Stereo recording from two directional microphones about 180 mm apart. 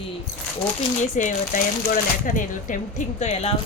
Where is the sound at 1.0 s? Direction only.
45° left (ahead or behind).